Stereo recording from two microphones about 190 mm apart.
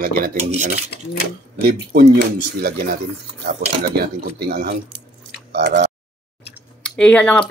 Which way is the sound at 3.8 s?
55° right (ahead or behind).